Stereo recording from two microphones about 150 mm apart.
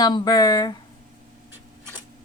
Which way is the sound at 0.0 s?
25° left (ahead or behind).